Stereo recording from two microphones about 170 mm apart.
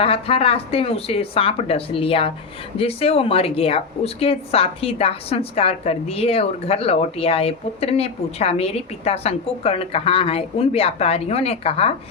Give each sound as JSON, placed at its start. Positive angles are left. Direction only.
{"t": 0.0, "sound": "speech", "side_deg": 35}